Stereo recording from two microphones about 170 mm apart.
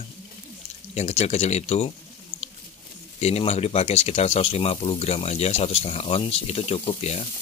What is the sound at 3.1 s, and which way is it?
Speech, 40° left (ahead or behind).